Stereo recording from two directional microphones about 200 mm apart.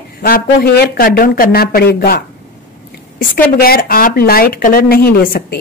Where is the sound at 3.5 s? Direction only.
50° left (ahead or behind).